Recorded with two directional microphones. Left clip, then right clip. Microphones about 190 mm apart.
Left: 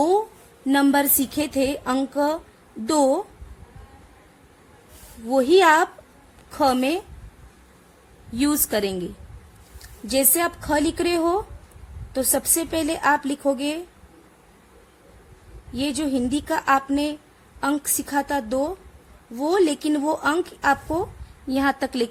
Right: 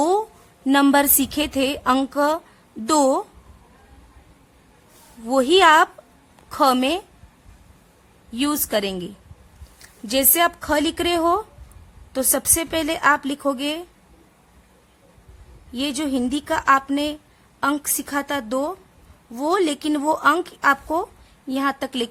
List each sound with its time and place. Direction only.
0.7 s a woman's voice: 20° right (ahead or behind)
5.3 s a woman's voice: 20° right (ahead or behind)
8.3 s a woman's voice: 10° right (ahead or behind)
10.1 s a woman's voice: 15° right (ahead or behind)
15.7 s a woman's voice: 15° right (ahead or behind)
21.5 s a woman's voice: 5° right (ahead or behind)